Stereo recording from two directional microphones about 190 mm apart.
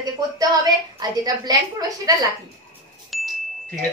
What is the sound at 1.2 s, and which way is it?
Speech, 20° right (ahead or behind).